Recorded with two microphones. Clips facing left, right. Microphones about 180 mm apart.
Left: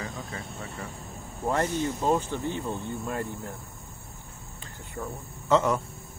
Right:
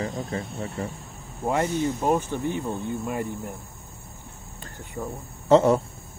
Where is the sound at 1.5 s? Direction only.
15° right (ahead or behind).